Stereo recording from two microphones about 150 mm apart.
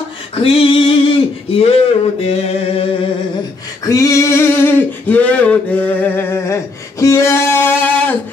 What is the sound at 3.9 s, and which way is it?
Male singing, 20° left (ahead or behind).